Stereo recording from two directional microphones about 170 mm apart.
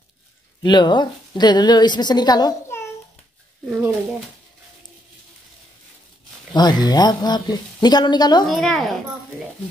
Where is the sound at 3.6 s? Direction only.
10° right (ahead or behind).